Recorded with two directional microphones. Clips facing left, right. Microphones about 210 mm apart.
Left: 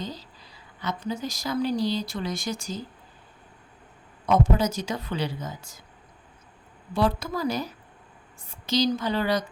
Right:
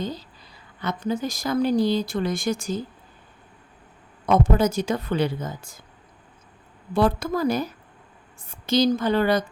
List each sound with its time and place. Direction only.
0.0 s a woman's voice: 55° right (ahead or behind)
4.3 s speech: 55° right (ahead or behind)
6.9 s speech: 50° right (ahead or behind)